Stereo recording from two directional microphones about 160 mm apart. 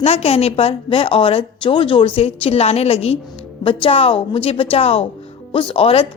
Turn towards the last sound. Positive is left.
turn(degrees=35)  # may be behind; listen again after turning